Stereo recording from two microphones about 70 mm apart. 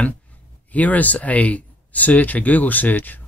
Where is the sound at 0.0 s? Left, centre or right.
Left.